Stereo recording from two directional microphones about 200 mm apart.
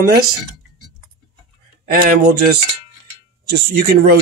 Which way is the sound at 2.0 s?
45° right (ahead or behind).